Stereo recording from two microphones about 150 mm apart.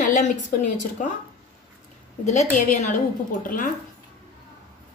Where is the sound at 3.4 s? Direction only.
65° left (ahead or behind).